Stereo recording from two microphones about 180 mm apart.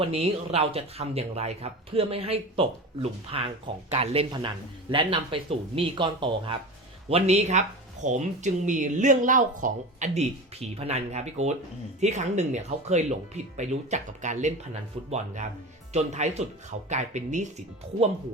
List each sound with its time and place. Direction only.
0.0 s speech: 35° right (ahead or behind)